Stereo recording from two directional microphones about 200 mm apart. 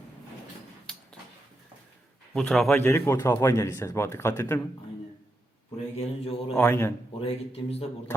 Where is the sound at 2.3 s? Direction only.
5° left (ahead or behind).